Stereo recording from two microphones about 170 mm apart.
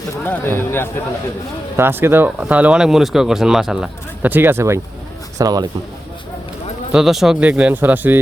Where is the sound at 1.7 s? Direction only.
15° right (ahead or behind).